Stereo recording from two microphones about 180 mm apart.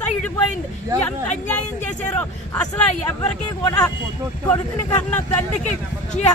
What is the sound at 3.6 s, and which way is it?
Speech, 20° left (ahead or behind).